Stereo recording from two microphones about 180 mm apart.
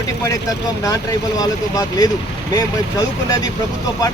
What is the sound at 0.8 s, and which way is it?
Speech, 20° left (ahead or behind).